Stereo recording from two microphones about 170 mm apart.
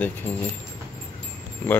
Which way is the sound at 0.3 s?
35° left (ahead or behind).